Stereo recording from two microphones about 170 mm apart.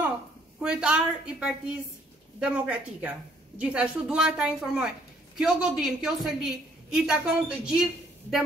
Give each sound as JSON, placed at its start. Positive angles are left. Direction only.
{"t": 0.6, "sound": "a woman's voice", "side_deg": -5}